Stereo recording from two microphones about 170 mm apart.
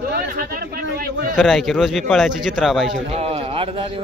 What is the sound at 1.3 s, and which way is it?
A man's voice, centre (ahead or behind).